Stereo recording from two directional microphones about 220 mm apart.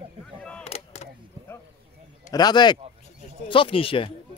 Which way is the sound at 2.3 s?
20° left (ahead or behind).